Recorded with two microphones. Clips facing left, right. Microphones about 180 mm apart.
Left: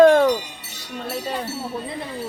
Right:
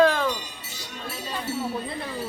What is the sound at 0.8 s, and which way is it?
Speech, 65° left (ahead or behind).